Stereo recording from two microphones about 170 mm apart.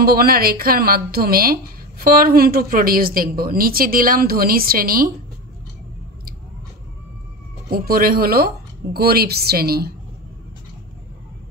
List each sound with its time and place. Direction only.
0.0 s speech: 65° right (ahead or behind)
7.7 s speech: 60° right (ahead or behind)